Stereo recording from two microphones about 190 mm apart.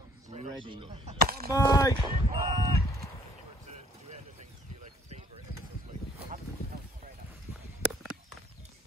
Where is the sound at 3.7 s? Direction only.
35° right (ahead or behind).